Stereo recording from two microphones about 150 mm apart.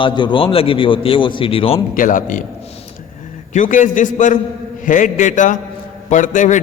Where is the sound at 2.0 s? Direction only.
60° left (ahead or behind).